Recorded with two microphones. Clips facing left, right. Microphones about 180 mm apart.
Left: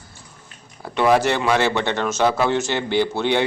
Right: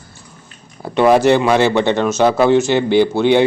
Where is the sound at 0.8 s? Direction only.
25° right (ahead or behind).